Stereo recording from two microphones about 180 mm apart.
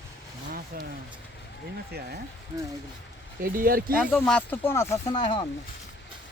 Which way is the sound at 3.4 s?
55° right (ahead or behind).